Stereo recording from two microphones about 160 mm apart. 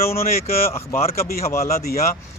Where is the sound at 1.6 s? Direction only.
75° left (ahead or behind).